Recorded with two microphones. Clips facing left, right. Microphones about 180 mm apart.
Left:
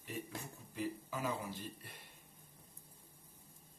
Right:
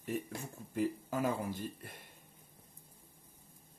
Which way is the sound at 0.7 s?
50° right (ahead or behind).